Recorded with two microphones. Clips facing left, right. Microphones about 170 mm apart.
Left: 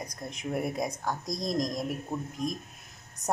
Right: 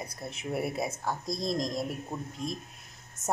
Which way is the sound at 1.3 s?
25° right (ahead or behind).